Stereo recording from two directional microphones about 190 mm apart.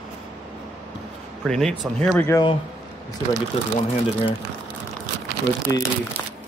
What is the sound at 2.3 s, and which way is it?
Speech, 25° left (ahead or behind).